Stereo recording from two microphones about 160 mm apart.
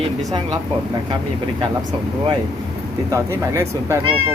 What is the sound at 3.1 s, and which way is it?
Speech, 15° right (ahead or behind).